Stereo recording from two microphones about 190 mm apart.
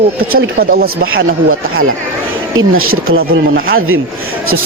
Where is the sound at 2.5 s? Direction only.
90° right.